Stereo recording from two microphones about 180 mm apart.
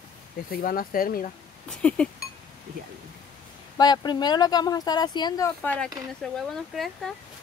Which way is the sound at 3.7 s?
25° left (ahead or behind).